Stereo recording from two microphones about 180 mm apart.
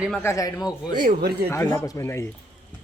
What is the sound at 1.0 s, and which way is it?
Speech, 60° right (ahead or behind).